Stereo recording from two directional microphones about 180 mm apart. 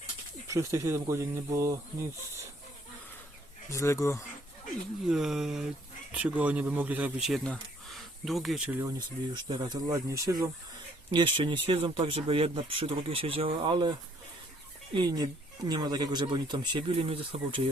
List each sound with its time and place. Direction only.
0.4 s speech: 15° right (ahead or behind)
3.7 s speech: 15° left (ahead or behind)
5.0 s a sound: centre (ahead or behind)
6.1 s speech: 5° right (ahead or behind)
8.8 s speech: 25° right (ahead or behind)
14.9 s speech: 25° right (ahead or behind)